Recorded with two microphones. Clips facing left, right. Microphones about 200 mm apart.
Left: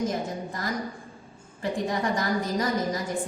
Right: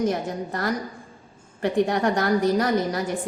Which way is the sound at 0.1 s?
65° right (ahead or behind).